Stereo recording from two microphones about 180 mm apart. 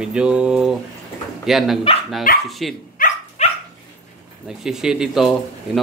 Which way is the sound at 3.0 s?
50° left (ahead or behind).